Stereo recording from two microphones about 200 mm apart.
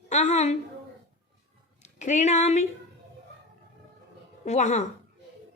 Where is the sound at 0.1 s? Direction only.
35° left (ahead or behind).